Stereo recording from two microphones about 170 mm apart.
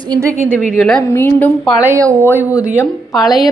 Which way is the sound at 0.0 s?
20° right (ahead or behind).